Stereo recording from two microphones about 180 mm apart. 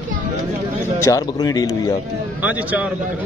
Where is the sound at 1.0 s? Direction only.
20° left (ahead or behind).